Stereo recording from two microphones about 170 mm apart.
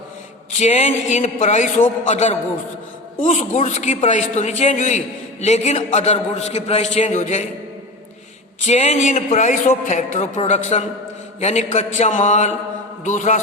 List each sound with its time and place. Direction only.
0.6 s a man's voice: 40° left (ahead or behind)
8.6 s a man's voice: 40° left (ahead or behind)